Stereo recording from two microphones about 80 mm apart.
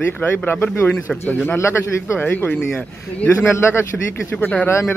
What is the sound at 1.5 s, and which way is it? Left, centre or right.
Speech, left.